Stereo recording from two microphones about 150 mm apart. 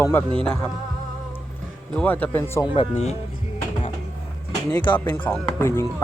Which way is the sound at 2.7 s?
40° left (ahead or behind).